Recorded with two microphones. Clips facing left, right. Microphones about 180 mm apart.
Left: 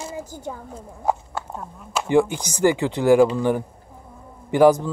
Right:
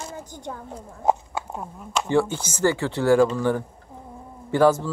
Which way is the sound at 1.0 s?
15° right (ahead or behind).